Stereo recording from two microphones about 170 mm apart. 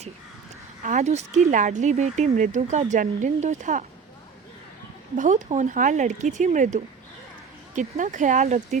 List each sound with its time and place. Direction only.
0.8 s speech: 45° right (ahead or behind)
5.1 s speech: 45° right (ahead or behind)